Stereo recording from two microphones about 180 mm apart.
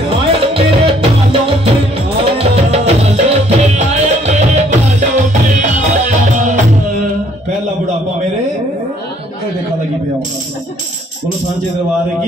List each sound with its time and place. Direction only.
0.1 s music: 35° right (ahead or behind)